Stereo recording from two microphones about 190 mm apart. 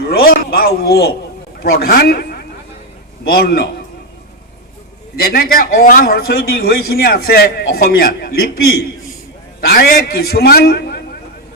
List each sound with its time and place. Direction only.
0.3 s a man's voice: 55° left (ahead or behind)
5.2 s a man's voice: 50° left (ahead or behind)